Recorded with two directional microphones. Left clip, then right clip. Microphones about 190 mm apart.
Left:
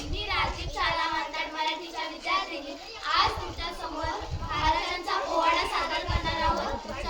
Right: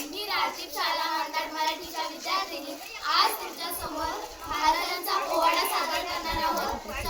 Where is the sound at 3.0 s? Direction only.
Centre (ahead or behind).